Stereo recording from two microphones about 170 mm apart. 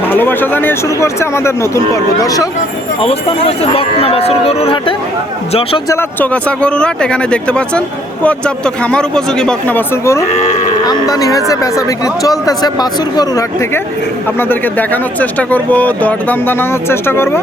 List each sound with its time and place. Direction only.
0.0 s speech: 10° left (ahead or behind)
3.0 s speech: 35° left (ahead or behind)
5.9 s speech: 10° left (ahead or behind)
10.3 s livestock: 45° left (ahead or behind)
10.8 s speech: 20° left (ahead or behind)